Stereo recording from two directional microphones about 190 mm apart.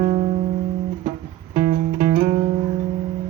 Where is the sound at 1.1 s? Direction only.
40° right (ahead or behind).